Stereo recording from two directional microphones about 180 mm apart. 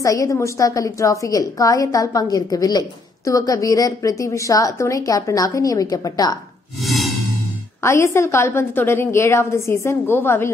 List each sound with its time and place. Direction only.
0.0 s a woman's voice: 20° left (ahead or behind)
6.8 s music: centre (ahead or behind)
7.8 s a woman's voice: 15° left (ahead or behind)